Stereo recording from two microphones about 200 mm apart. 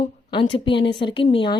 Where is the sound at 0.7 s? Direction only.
60° left (ahead or behind).